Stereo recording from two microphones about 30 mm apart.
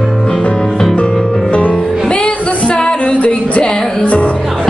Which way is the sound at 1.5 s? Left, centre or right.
Left.